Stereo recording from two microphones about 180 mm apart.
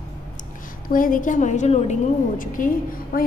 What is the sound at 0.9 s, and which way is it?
A woman's voice, 50° left (ahead or behind).